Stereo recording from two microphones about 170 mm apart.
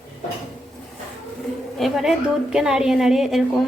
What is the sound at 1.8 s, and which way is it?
Speech, centre (ahead or behind).